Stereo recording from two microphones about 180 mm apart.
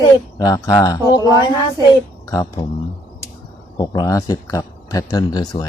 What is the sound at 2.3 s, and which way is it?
Speech, 20° left (ahead or behind).